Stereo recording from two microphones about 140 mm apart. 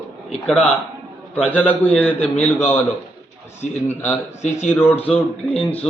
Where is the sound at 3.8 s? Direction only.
15° left (ahead or behind).